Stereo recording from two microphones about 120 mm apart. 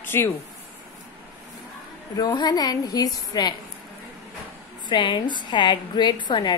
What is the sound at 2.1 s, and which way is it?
A woman's voice, 35° left (ahead or behind).